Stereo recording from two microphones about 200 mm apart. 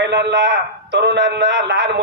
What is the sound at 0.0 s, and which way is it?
A man's voice, 60° right (ahead or behind).